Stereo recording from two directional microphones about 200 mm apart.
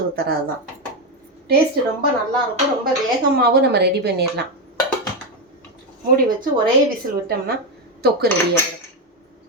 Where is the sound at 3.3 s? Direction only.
50° right (ahead or behind).